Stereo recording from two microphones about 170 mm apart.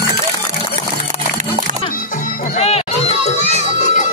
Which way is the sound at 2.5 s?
35° left (ahead or behind).